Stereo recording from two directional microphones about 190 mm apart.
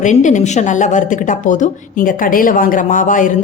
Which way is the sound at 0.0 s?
40° left (ahead or behind).